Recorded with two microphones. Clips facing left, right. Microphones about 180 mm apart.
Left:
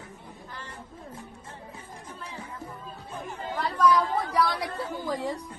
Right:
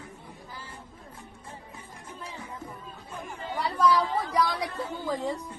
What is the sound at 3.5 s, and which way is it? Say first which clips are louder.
Chatter: left 1 dB; 10° right (ahead or behind).